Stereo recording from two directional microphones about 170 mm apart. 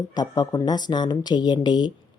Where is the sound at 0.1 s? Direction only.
25° left (ahead or behind).